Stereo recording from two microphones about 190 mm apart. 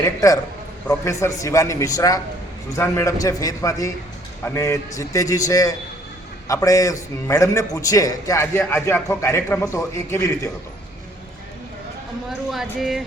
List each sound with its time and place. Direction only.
0.0 s a man's voice: 15° left (ahead or behind)
12.5 s speech: centre (ahead or behind)